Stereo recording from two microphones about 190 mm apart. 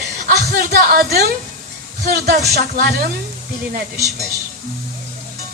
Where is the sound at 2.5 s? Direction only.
55° right (ahead or behind).